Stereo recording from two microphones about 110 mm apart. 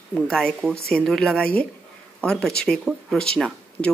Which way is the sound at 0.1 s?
5° left (ahead or behind).